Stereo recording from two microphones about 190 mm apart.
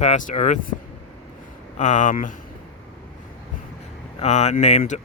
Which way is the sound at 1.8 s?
40° left (ahead or behind).